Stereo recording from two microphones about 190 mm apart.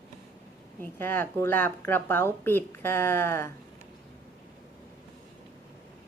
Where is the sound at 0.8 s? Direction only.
10° left (ahead or behind).